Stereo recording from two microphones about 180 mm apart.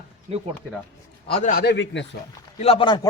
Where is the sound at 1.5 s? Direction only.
70° left (ahead or behind).